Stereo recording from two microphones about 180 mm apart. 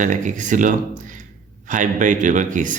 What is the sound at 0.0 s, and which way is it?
A man's voice, 45° right (ahead or behind).